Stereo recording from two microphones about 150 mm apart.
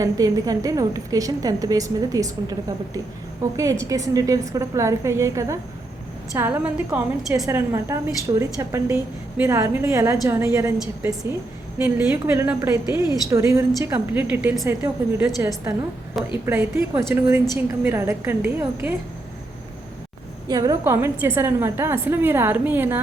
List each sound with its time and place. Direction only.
0.0 s a woman's voice: 25° right (ahead or behind)
11.8 s speech: 15° right (ahead or behind)
16.1 s a woman's voice: centre (ahead or behind)
16.5 s speech: 15° right (ahead or behind)
20.5 s speech: 25° right (ahead or behind)